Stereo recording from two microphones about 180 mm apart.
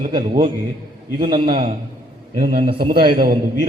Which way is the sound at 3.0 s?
25° right (ahead or behind).